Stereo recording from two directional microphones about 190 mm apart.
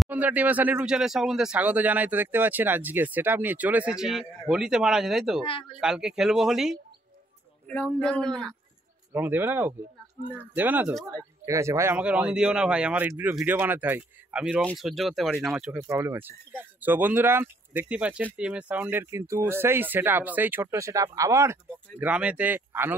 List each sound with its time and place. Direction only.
0.0 s speech: 10° right (ahead or behind)
5.4 s speech: 30° left (ahead or behind)
5.8 s speech: centre (ahead or behind)
9.1 s speech: 10° right (ahead or behind)
11.1 s speech: 15° right (ahead or behind)
15.9 s speech: 15° right (ahead or behind)